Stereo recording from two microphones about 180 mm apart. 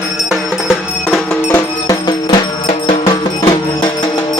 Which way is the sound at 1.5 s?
20° left (ahead or behind).